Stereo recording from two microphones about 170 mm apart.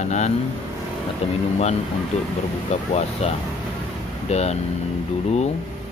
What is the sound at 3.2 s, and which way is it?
Speech, 40° left (ahead or behind).